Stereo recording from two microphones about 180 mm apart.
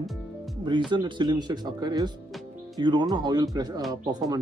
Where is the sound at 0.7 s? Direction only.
25° right (ahead or behind).